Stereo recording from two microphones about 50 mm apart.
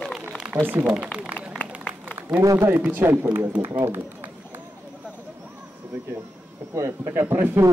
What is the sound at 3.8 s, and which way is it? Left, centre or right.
Run, right.